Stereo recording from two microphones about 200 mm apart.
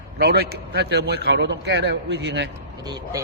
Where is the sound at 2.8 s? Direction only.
20° right (ahead or behind).